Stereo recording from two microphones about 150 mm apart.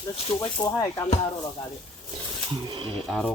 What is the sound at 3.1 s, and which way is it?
Speech, centre (ahead or behind).